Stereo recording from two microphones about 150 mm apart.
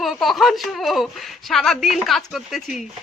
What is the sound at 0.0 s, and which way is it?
Speech, centre (ahead or behind).